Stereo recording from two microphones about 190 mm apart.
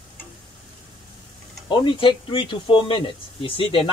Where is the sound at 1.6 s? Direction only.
25° left (ahead or behind).